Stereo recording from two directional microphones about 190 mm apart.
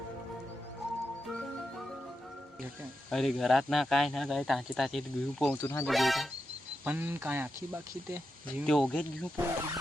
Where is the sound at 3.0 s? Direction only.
Centre (ahead or behind).